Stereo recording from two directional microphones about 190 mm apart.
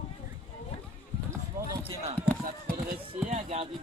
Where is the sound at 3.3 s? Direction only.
35° right (ahead or behind).